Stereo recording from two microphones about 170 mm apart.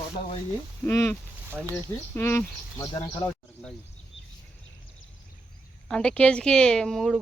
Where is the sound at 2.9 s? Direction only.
25° left (ahead or behind).